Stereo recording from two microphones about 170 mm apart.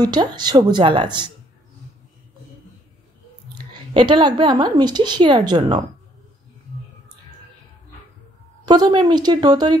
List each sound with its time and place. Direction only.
0.0 s a woman's voice: 25° right (ahead or behind)
3.7 s a woman's voice: 25° right (ahead or behind)
8.6 s a woman's voice: 25° right (ahead or behind)